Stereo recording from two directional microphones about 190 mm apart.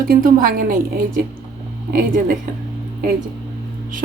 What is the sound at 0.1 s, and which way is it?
Speech, 50° right (ahead or behind).